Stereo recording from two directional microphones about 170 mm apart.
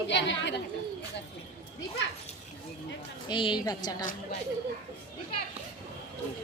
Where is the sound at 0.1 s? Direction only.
90° left.